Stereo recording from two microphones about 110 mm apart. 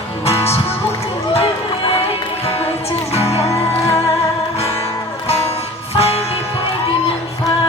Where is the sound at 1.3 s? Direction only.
65° left (ahead or behind).